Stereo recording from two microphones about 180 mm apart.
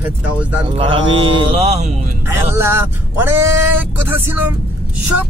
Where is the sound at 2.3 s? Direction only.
15° right (ahead or behind).